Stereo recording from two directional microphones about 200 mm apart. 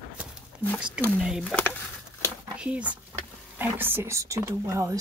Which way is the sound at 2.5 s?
5° right (ahead or behind).